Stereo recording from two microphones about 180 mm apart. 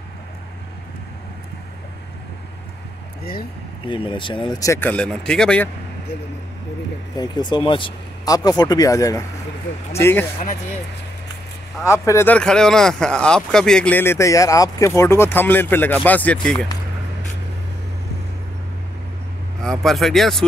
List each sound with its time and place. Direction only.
3.8 s speech: 30° left (ahead or behind); by 5.7 s 5° left (ahead or behind)
7.2 s speech: 25° left (ahead or behind)
11.8 s speech: 15° left (ahead or behind)
19.8 s speech: centre (ahead or behind)